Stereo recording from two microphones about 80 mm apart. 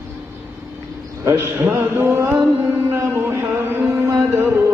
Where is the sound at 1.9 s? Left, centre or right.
Right.